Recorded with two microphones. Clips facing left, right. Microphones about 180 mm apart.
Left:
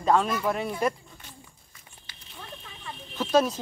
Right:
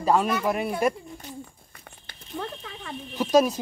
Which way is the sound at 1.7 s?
60° right (ahead or behind).